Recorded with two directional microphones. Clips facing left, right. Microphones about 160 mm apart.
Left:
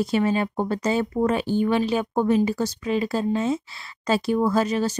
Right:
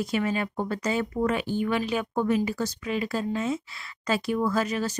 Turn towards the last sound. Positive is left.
turn(degrees=30)  # may be behind; listen again after turning